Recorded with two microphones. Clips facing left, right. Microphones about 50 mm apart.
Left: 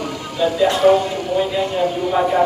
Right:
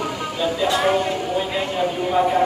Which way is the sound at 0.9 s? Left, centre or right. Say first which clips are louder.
Left 5 dB; centre.